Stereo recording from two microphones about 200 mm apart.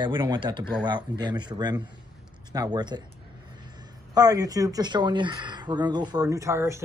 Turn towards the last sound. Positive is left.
turn(degrees=-15)  # may be behind; listen again after turning